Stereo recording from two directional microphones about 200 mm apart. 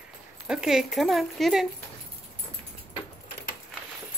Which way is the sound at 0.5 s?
5° right (ahead or behind).